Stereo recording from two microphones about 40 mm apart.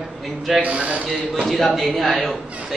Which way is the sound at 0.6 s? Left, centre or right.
Right.